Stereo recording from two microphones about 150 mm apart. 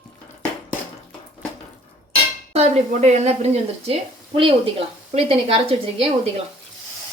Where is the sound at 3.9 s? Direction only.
35° right (ahead or behind).